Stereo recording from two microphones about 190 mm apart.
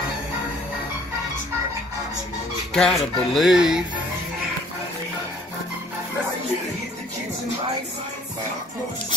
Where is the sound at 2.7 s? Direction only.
5° left (ahead or behind).